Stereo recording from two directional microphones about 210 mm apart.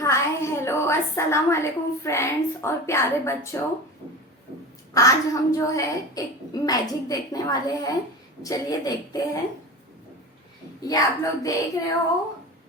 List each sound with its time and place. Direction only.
0.0 s a woman's voice: 15° left (ahead or behind)
4.9 s a woman's voice: 15° left (ahead or behind)
10.8 s a woman's voice: 15° left (ahead or behind)